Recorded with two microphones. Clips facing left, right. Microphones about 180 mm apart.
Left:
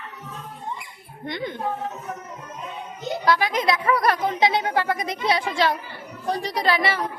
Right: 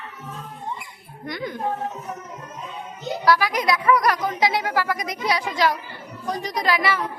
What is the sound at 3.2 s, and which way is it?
A woman's voice, 20° left (ahead or behind).